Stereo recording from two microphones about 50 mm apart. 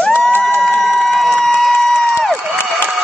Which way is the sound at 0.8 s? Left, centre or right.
Centre.